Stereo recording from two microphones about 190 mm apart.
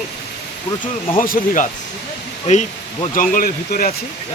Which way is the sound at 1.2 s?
45° left (ahead or behind).